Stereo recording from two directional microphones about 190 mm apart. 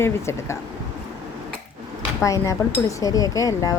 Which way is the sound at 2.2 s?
15° left (ahead or behind).